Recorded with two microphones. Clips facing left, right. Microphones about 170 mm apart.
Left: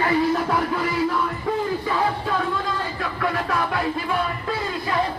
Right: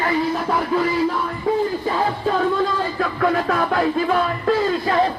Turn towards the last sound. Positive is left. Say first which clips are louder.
# right 5 dB
turn(degrees=-50)  # may be behind; listen again after turning